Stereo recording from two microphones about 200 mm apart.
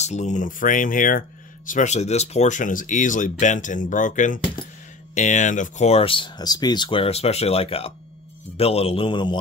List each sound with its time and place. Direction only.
0.0 s speech: 35° left (ahead or behind)